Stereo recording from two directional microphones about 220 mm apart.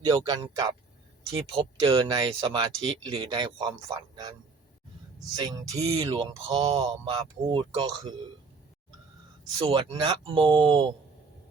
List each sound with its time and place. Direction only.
0.0 s speech: 20° right (ahead or behind)
6.0 s speech: 25° right (ahead or behind)
9.6 s speech: 25° right (ahead or behind)